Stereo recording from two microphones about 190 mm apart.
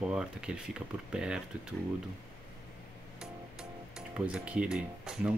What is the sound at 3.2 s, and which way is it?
Music, 5° right (ahead or behind).